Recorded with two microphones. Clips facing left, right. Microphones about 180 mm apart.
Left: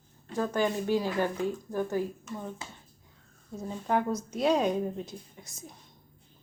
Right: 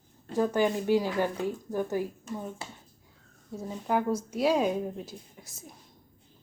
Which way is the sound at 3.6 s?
5° right (ahead or behind).